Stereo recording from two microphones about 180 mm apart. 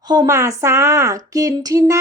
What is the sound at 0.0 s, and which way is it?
A woman's voice, 25° right (ahead or behind).